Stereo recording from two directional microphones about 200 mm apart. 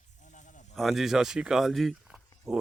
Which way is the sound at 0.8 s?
Centre (ahead or behind).